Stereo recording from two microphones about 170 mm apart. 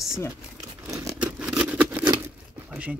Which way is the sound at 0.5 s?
20° right (ahead or behind).